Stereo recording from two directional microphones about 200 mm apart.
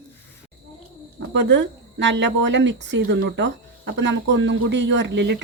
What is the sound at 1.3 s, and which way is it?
Speech, 60° right (ahead or behind).